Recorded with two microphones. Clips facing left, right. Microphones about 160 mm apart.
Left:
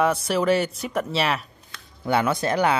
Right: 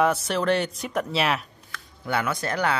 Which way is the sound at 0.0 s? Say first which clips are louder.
Left 1 dB; centre (ahead or behind).